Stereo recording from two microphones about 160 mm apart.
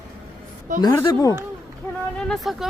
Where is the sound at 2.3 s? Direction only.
Centre (ahead or behind).